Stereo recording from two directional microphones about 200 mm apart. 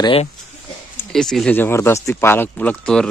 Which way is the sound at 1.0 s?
5° left (ahead or behind).